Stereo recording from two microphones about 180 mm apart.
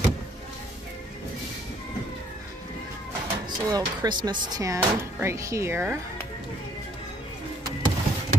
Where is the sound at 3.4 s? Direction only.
25° right (ahead or behind).